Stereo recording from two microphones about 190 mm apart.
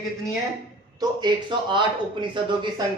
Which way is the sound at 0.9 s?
25° right (ahead or behind).